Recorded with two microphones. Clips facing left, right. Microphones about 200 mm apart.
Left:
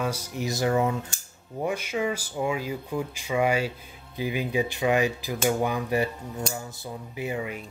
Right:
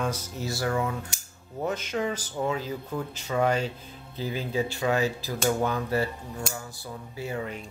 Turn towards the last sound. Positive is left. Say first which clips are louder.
# left 2 dB
turn(degrees=10)  # may be behind; listen again after turning